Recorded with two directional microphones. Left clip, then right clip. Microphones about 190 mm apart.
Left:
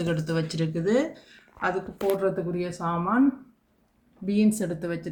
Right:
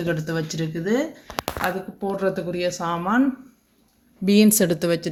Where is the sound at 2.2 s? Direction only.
55° right (ahead or behind).